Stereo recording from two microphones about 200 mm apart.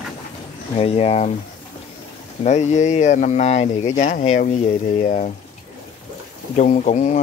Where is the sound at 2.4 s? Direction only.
35° left (ahead or behind).